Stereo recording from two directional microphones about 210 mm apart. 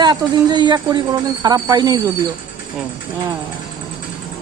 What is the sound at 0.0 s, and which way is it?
Speech, 20° right (ahead or behind).